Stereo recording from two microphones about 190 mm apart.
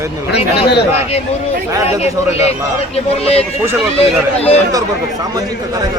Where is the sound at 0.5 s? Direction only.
60° left (ahead or behind).